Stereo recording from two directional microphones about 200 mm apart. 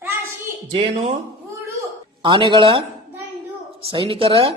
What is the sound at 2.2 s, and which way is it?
Speech, 25° right (ahead or behind).